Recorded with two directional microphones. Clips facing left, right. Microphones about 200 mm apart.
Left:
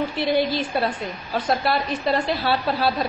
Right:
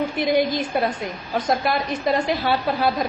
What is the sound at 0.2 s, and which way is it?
A woman's voice, 15° right (ahead or behind).